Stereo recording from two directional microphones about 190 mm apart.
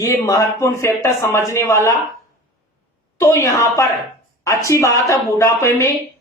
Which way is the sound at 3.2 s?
15° left (ahead or behind).